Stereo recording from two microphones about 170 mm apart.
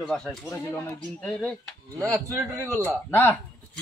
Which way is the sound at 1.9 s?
15° right (ahead or behind).